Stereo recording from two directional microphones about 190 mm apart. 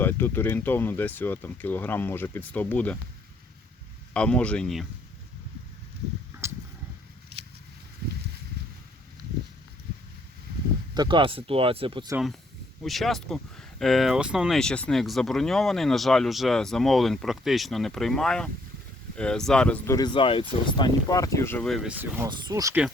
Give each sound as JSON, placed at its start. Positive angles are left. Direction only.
{"t": 0.0, "sound": "speech", "side_deg": 10}
{"t": 4.1, "sound": "speech", "side_deg": 5}
{"t": 10.9, "sound": "speech", "side_deg": -25}
{"t": 12.8, "sound": "speech", "side_deg": 0}
{"t": 22.2, "sound": "speech", "side_deg": -20}